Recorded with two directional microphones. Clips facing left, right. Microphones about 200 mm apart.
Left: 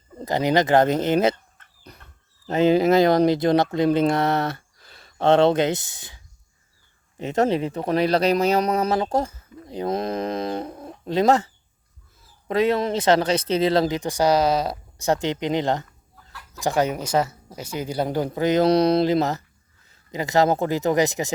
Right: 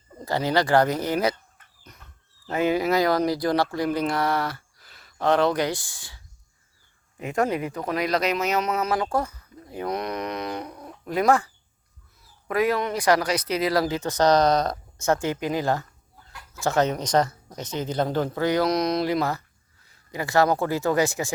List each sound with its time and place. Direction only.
0.2 s speech: 20° left (ahead or behind)
2.5 s speech: 25° left (ahead or behind)
18.6 s speech: 30° left (ahead or behind)